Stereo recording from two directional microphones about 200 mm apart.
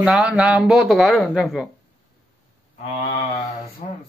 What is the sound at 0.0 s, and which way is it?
Speech, 5° right (ahead or behind).